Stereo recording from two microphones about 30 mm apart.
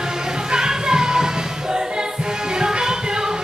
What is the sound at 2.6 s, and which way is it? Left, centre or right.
Music, right.